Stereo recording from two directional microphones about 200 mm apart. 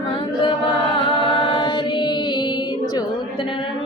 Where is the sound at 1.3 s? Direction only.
25° left (ahead or behind).